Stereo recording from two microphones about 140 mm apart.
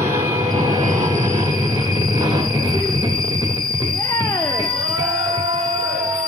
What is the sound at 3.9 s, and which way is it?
Music, 30° left (ahead or behind).